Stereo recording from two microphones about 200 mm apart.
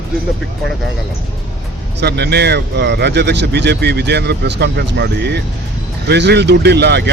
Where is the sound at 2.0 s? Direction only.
55° right (ahead or behind).